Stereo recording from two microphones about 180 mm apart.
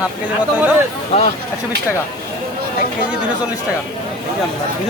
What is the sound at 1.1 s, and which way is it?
Speech, 30° left (ahead or behind).